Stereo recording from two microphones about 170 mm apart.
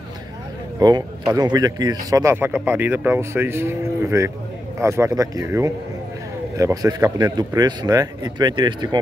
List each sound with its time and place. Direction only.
0.7 s a man's voice: 20° right (ahead or behind)